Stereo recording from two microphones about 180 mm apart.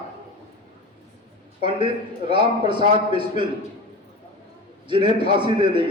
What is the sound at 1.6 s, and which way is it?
A man's voice, 30° right (ahead or behind).